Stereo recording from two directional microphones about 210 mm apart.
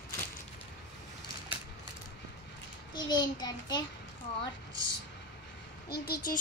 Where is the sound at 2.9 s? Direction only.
20° left (ahead or behind).